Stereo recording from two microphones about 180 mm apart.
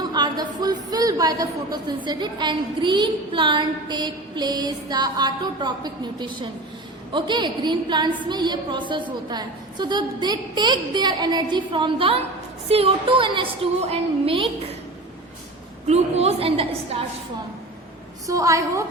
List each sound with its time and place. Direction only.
0.0 s speech: 20° right (ahead or behind)
15.9 s a woman's voice: 35° right (ahead or behind)
18.3 s a woman's voice: 15° right (ahead or behind)